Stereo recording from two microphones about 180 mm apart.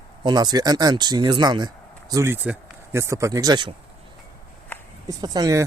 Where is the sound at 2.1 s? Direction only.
15° right (ahead or behind).